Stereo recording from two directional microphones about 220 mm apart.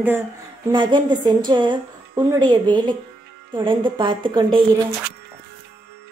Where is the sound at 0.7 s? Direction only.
20° right (ahead or behind).